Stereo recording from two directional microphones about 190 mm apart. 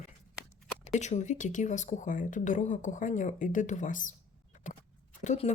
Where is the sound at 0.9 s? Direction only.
40° left (ahead or behind).